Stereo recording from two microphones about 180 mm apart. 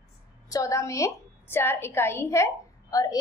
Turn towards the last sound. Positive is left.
turn(degrees=15)  # may be behind; listen again after turning